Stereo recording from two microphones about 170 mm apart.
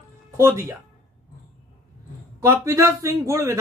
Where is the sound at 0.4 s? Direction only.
15° right (ahead or behind).